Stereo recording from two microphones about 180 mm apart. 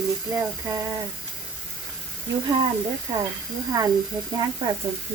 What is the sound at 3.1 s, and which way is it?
Speech, 20° right (ahead or behind).